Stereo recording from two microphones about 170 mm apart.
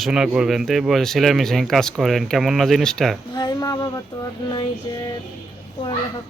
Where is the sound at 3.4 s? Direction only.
20° left (ahead or behind).